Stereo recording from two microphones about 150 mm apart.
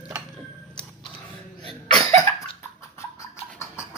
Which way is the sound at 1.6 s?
30° left (ahead or behind).